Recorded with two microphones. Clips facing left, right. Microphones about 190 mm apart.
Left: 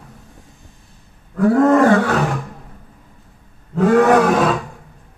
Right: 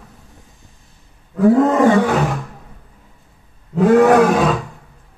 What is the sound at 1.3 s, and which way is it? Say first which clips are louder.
Wild animals: even; 20° right (ahead or behind).